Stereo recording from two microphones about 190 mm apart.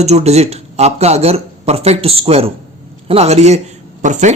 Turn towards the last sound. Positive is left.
turn(degrees=-40)  # may be behind; listen again after turning